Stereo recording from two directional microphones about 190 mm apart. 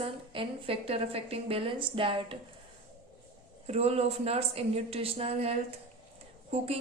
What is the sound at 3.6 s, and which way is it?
A woman's voice, 35° right (ahead or behind).